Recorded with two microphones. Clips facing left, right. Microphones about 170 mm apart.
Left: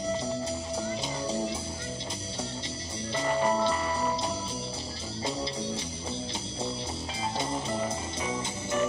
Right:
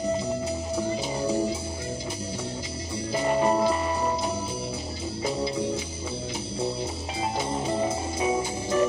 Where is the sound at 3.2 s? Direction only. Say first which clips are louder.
Right 4 dB; 25° right (ahead or behind).